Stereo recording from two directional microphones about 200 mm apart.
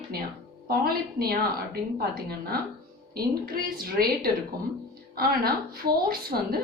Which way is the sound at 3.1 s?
45° right (ahead or behind).